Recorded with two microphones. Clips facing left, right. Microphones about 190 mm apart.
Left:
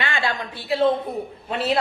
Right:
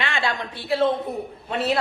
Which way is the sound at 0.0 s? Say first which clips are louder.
Even; centre (ahead or behind).